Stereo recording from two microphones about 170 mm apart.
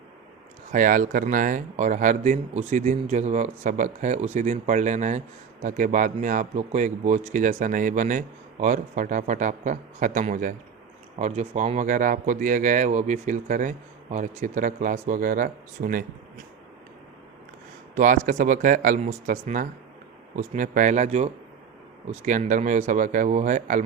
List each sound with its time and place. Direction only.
0.7 s speech: 50° right (ahead or behind)
17.9 s speech: 50° right (ahead or behind)